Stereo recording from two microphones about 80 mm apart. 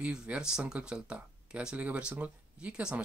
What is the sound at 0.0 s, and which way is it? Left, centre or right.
Speech, centre.